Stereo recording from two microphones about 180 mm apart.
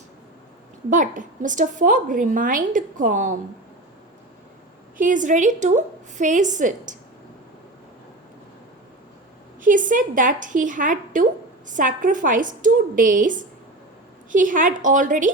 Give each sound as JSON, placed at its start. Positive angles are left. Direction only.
{"t": 0.9, "sound": "a woman's voice", "side_deg": -45}
{"t": 4.9, "sound": "a woman's voice", "side_deg": -45}
{"t": 9.6, "sound": "a woman's voice", "side_deg": -45}